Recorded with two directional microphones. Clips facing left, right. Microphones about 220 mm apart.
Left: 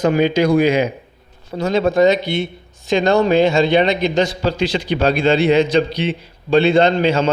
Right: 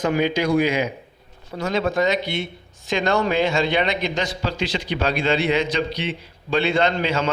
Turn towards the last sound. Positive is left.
turn(degrees=30)  # may be behind; listen again after turning